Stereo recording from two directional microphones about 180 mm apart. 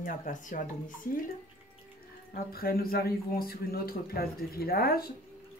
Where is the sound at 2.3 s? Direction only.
55° left (ahead or behind).